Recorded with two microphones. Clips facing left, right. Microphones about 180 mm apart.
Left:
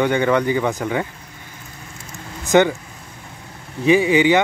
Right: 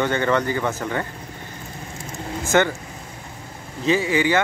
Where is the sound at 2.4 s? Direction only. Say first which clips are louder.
Left 4 dB; 15° left (ahead or behind).